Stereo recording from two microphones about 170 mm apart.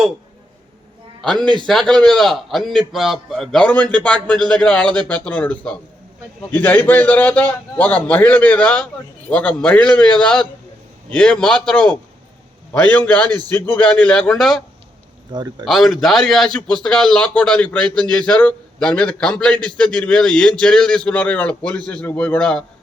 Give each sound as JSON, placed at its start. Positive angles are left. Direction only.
{"t": 1.2, "sound": "a man's voice", "side_deg": 5}
{"t": 15.3, "sound": "speech", "side_deg": -25}
{"t": 15.6, "sound": "a man's voice", "side_deg": 0}